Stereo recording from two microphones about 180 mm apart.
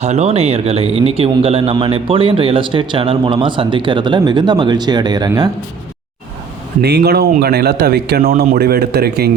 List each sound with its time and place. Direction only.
0.0 s speech: 35° right (ahead or behind)
6.8 s speech: 65° right (ahead or behind)